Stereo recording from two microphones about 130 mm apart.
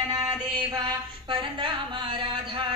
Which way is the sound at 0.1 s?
25° right (ahead or behind).